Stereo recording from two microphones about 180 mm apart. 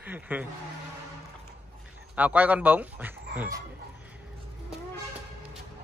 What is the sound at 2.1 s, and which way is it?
Speech, 10° right (ahead or behind).